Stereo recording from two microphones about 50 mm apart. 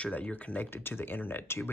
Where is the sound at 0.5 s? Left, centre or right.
Left.